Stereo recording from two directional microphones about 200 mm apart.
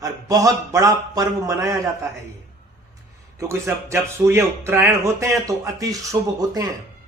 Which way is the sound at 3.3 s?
15° right (ahead or behind).